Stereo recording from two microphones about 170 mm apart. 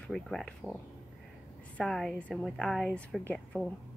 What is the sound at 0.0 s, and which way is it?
Speech, 5° left (ahead or behind).